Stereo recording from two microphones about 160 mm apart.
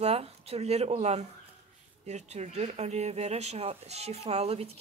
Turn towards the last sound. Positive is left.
turn(degrees=-40)  # may be behind; listen again after turning